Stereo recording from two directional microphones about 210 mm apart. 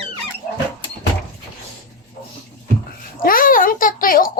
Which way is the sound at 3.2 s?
40° left (ahead or behind).